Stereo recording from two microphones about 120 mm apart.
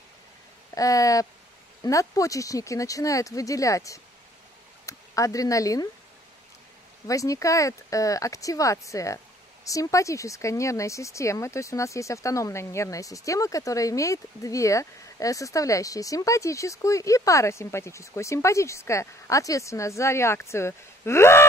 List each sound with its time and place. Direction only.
0.7 s speech: 30° left (ahead or behind)
7.1 s speech: 25° left (ahead or behind)